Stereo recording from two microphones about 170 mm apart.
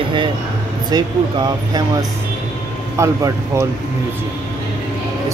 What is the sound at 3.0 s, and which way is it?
Speech, 15° right (ahead or behind).